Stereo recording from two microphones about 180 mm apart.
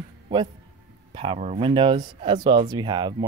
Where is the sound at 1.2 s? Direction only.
35° right (ahead or behind).